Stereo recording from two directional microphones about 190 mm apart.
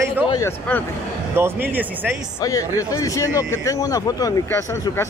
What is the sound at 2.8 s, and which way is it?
Speech, 15° left (ahead or behind).